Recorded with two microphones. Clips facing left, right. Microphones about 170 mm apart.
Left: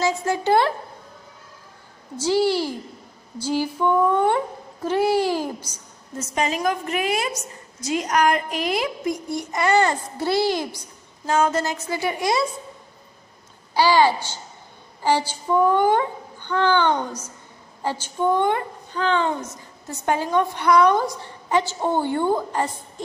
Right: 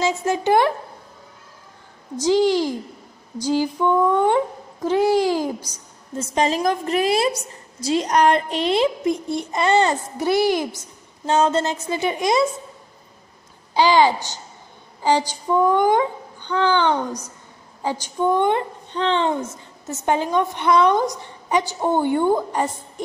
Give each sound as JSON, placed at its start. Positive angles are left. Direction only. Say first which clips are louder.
{"t": 0.0, "sound": "speech", "louder": "right 1 dB", "side_deg": -20}
{"t": 2.2, "sound": "speech", "louder": "right 3 dB", "side_deg": -15}
{"t": 4.8, "sound": "speech", "louder": "right 2 dB", "side_deg": -15}
{"t": 6.1, "sound": "a woman's voice", "louder": "right 4 dB", "side_deg": -30}
{"t": 11.2, "sound": "a woman's voice", "louder": "right 2 dB", "side_deg": -30}
{"t": 13.7, "sound": "a woman's voice", "louder": "right 1 dB", "side_deg": -20}